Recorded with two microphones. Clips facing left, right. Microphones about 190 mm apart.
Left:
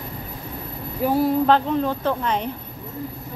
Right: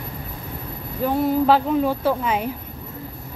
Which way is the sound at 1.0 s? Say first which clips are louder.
Even; centre (ahead or behind).